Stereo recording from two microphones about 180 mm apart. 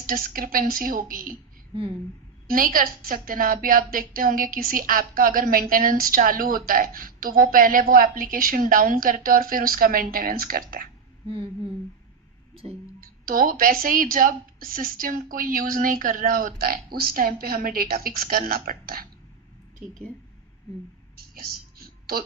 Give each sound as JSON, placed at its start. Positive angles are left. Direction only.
{"t": 0.0, "sound": "a woman's voice", "side_deg": -50}
{"t": 2.5, "sound": "a woman's voice", "side_deg": -50}
{"t": 13.0, "sound": "a woman's voice", "side_deg": -50}
{"t": 21.2, "sound": "a sound", "side_deg": -55}